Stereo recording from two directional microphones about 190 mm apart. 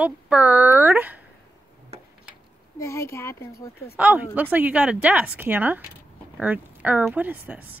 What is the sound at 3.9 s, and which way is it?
Speech, 5° right (ahead or behind).